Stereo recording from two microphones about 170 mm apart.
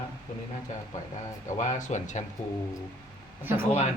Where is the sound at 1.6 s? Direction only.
45° left (ahead or behind).